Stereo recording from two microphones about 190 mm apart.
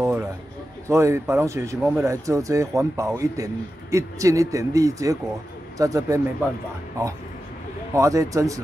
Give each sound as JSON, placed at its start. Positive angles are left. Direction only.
{"t": 0.0, "sound": "a sound", "side_deg": -10}
{"t": 0.8, "sound": "speech", "side_deg": -15}
{"t": 7.9, "sound": "speech", "side_deg": -15}